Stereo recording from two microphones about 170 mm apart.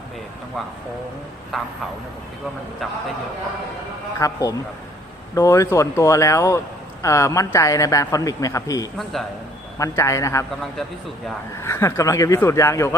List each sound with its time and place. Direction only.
1.5 s speech: centre (ahead or behind)
4.2 s a man's voice: 20° left (ahead or behind)
11.6 s speech: 15° left (ahead or behind)